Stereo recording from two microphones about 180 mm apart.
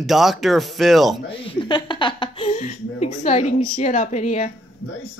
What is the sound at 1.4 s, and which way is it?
Speech, 25° left (ahead or behind).